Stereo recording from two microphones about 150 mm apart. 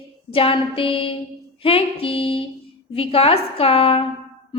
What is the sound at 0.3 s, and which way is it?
A woman's voice, 40° left (ahead or behind).